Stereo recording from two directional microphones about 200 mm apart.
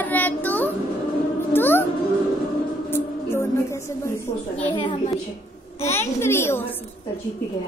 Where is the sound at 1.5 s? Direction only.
10° left (ahead or behind).